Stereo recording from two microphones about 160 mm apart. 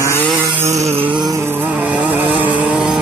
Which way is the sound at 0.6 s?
40° right (ahead or behind).